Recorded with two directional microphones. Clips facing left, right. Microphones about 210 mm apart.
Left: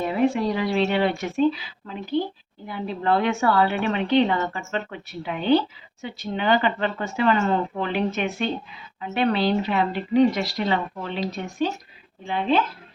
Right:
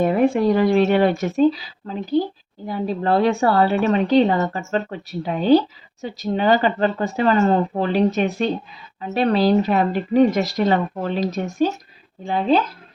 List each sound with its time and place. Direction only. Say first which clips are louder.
0.0 s a woman's voice: right 5 dB; 50° right (ahead or behind)